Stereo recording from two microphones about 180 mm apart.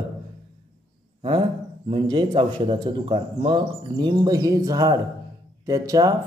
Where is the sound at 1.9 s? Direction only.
25° right (ahead or behind).